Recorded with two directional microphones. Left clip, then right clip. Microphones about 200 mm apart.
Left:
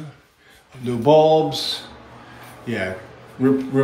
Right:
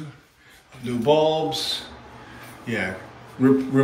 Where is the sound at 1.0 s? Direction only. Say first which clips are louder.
Left 5 dB; 25° left (ahead or behind).